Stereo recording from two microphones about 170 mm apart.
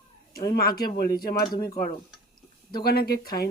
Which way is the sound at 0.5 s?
60° left (ahead or behind).